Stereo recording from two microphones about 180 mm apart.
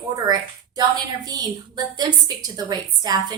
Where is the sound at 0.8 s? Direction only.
20° right (ahead or behind).